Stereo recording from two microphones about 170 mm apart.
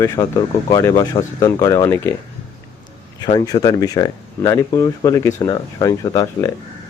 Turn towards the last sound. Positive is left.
turn(degrees=20)  # may be behind; listen again after turning